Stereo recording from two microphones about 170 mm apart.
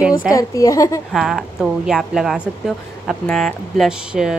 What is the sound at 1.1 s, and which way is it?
Speech, centre (ahead or behind).